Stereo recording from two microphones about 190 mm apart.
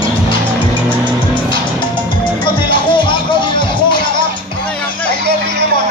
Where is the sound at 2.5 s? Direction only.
25° left (ahead or behind).